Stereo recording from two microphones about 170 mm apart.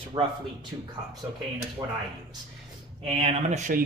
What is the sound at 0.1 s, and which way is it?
Speech, 30° right (ahead or behind).